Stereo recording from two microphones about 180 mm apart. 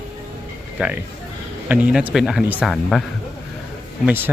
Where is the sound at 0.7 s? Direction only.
5° right (ahead or behind).